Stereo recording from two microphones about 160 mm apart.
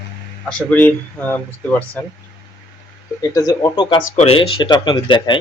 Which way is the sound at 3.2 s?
20° left (ahead or behind).